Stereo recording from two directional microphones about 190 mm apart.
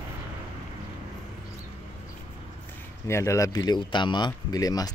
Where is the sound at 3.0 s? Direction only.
15° left (ahead or behind).